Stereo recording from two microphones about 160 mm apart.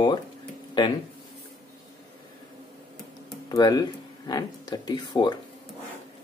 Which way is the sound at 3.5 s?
25° left (ahead or behind).